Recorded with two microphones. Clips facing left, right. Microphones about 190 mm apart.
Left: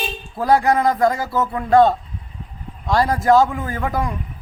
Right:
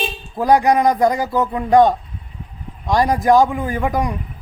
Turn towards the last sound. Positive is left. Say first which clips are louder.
# right 3 dB
turn(degrees=-15)  # may be behind; listen again after turning